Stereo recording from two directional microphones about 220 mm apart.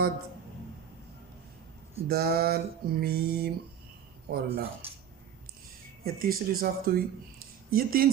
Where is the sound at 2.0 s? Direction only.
45° right (ahead or behind).